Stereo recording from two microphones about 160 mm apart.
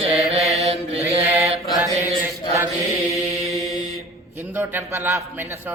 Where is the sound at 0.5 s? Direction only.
40° right (ahead or behind).